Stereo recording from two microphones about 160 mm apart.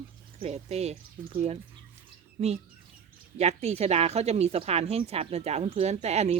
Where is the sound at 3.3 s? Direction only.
45° right (ahead or behind).